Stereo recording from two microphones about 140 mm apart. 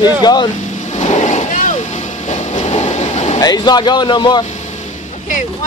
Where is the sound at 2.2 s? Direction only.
55° left (ahead or behind).